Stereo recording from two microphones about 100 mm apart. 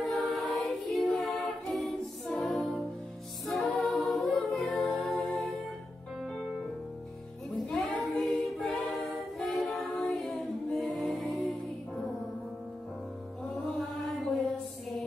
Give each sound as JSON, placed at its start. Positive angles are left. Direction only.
{"t": 0.2, "sound": "choir", "side_deg": 0}
{"t": 1.2, "sound": "a capella", "side_deg": 0}
{"t": 2.4, "sound": "music", "side_deg": 10}
{"t": 6.2, "sound": "piano", "side_deg": 0}
{"t": 7.6, "sound": "a sound", "side_deg": 5}
{"t": 8.0, "sound": "a capella", "side_deg": 0}
{"t": 13.7, "sound": "chant", "side_deg": 0}